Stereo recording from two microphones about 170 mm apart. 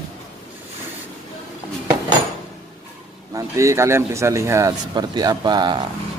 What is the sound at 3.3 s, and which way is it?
A man's voice, 20° right (ahead or behind).